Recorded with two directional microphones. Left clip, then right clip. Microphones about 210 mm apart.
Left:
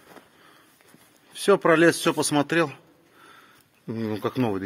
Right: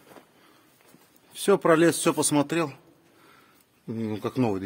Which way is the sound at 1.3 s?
10° right (ahead or behind).